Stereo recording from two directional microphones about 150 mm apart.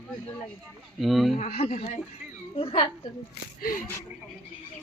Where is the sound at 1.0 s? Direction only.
Centre (ahead or behind).